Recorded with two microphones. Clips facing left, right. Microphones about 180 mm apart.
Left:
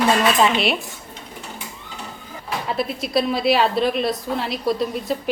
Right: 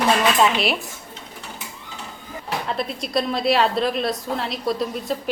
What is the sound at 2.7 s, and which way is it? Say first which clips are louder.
A woman's voice: left 5 dB; 5° left (ahead or behind).